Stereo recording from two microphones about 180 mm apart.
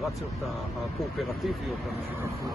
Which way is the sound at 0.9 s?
Centre (ahead or behind).